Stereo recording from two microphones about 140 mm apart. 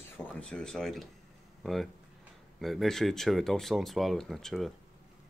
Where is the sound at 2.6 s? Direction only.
Centre (ahead or behind).